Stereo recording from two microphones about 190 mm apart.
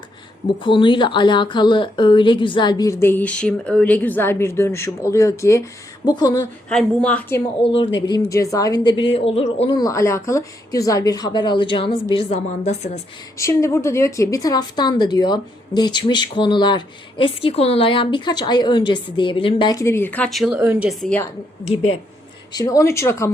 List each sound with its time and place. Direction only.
0.6 s a woman's voice: 25° left (ahead or behind)
6.7 s a woman's voice: 5° left (ahead or behind)
7.6 s a woman's voice: 30° left (ahead or behind)
9.7 s a woman's voice: 15° left (ahead or behind); by 12.9 s 35° left (ahead or behind)
13.3 s a woman's voice: 15° left (ahead or behind)
22.5 s a woman's voice: 15° left (ahead or behind)